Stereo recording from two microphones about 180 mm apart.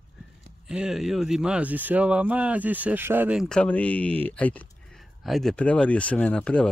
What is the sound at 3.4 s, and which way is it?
Speech, 5° left (ahead or behind).